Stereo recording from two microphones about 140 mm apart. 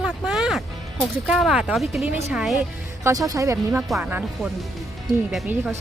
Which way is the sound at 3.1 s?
25° right (ahead or behind).